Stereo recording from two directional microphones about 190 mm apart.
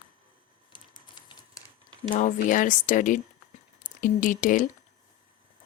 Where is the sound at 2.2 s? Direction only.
45° left (ahead or behind).